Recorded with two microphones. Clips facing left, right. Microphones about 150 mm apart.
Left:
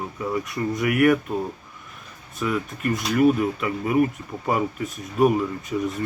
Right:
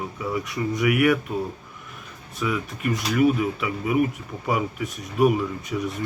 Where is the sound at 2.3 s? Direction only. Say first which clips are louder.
Left 1 dB; 5° right (ahead or behind).